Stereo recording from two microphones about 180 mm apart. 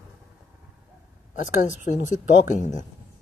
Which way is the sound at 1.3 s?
45° left (ahead or behind).